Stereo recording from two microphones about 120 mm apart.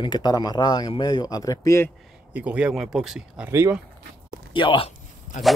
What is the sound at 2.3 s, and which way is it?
Speech, 10° right (ahead or behind).